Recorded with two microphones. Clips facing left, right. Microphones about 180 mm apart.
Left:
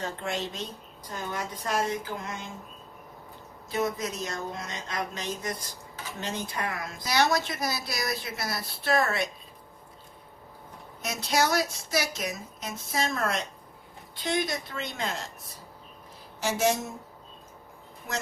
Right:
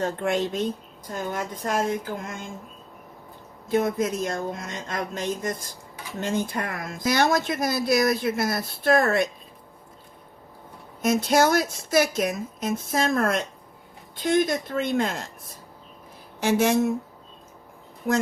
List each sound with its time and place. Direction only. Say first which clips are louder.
0.0 s a woman's voice: right 8 dB; 50° right (ahead or behind)
3.7 s a woman's voice: right 7 dB; 55° right (ahead or behind)
11.0 s a woman's voice: right 7 dB; 50° right (ahead or behind)
18.0 s speech: right 11 dB; 60° right (ahead or behind)